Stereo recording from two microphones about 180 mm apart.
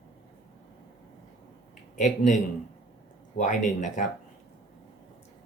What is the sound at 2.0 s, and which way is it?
Speech, 40° left (ahead or behind).